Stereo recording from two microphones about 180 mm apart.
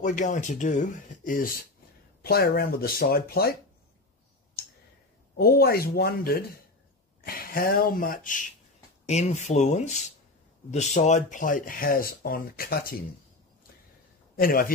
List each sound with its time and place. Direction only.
0.0 s speech: 45° left (ahead or behind)
5.3 s speech: 60° left (ahead or behind)
9.0 s speech: 40° left (ahead or behind); by 13.0 s 55° left (ahead or behind)
14.3 s a man's voice: 55° left (ahead or behind)